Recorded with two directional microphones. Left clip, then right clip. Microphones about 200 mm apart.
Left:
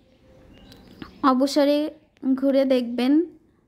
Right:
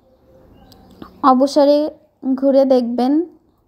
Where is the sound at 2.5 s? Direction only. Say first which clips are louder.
Right 9 dB; centre (ahead or behind).